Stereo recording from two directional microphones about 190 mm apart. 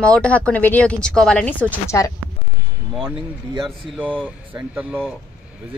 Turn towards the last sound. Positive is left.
turn(degrees=-10)  # may be behind; listen again after turning